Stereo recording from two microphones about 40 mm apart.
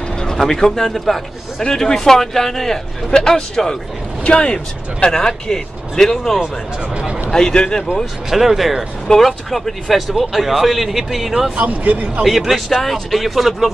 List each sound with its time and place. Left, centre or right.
0.2 s speech: centre
1.6 s speech: centre
3.1 s speech: centre
4.2 s speech: left
8.3 s speech: centre
11.5 s speech: right
12.3 s speech: centre